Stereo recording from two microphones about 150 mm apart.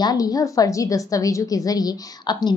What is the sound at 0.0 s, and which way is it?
A woman's voice, 25° left (ahead or behind).